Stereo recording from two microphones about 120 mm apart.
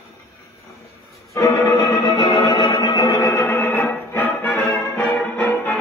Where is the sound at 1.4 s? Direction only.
25° left (ahead or behind).